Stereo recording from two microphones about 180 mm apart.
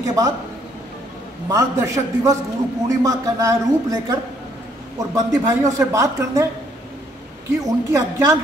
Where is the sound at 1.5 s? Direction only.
20° right (ahead or behind).